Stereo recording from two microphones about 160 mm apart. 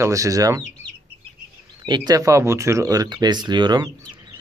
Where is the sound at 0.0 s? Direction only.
20° right (ahead or behind).